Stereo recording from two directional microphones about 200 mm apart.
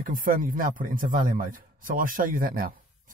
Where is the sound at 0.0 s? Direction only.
45° right (ahead or behind).